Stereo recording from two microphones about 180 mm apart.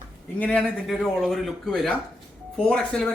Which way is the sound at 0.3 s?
5° left (ahead or behind).